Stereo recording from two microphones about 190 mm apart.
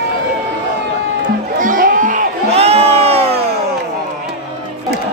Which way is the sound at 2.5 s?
30° right (ahead or behind).